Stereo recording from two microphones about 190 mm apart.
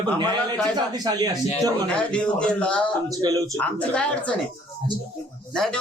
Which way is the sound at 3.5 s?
5° left (ahead or behind).